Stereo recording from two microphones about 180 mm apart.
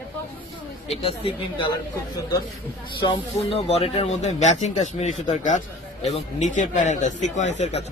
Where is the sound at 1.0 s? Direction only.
30° left (ahead or behind).